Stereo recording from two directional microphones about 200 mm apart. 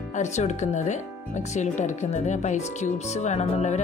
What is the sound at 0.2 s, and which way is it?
Speech, 35° left (ahead or behind).